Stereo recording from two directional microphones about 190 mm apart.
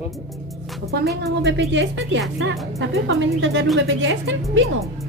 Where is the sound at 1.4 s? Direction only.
70° right (ahead or behind).